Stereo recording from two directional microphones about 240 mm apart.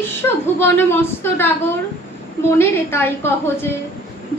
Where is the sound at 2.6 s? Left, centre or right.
Centre.